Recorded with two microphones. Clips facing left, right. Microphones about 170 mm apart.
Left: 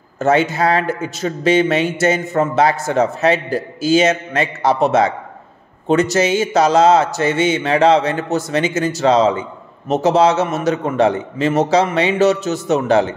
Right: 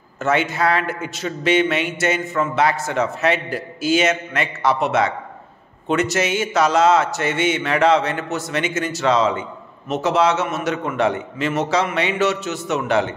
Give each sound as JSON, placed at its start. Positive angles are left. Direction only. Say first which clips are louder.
{"t": 0.2, "sound": "speech", "louder": "left 4 dB", "side_deg": 35}